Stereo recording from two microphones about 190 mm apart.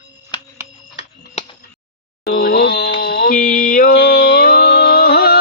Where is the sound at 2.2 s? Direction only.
50° left (ahead or behind).